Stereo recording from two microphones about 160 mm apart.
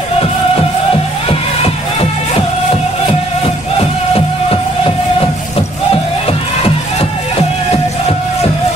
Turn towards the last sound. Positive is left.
turn(degrees=35)  # may be behind; listen again after turning